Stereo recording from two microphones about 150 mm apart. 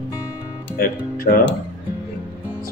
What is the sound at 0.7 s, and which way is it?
Speech, 75° left (ahead or behind).